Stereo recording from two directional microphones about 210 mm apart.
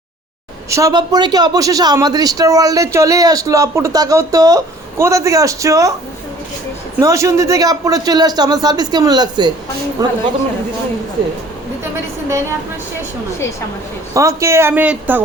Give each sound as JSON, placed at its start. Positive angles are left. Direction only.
{"t": 0.7, "sound": "a man's voice", "side_deg": -15}
{"t": 7.0, "sound": "a man's voice", "side_deg": -15}
{"t": 14.1, "sound": "a man's voice", "side_deg": -15}